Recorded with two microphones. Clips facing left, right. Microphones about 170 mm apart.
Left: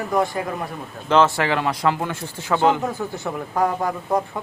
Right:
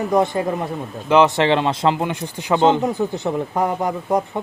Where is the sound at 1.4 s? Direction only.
25° right (ahead or behind).